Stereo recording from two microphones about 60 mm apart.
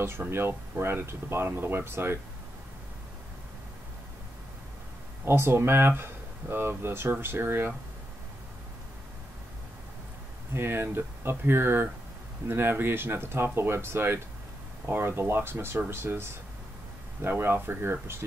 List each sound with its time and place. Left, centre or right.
0.0 s speech: right
5.2 s speech: right
10.5 s speech: right